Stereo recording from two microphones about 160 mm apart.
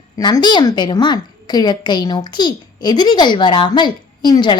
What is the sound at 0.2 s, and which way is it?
A woman's voice, 25° left (ahead or behind).